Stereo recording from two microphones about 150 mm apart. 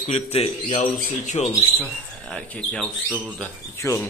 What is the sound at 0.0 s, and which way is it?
Speech, 45° left (ahead or behind).